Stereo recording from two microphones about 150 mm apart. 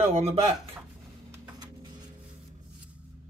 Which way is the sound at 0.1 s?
45° right (ahead or behind).